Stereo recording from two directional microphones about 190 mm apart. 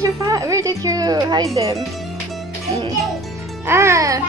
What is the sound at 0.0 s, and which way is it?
Speech, 15° right (ahead or behind).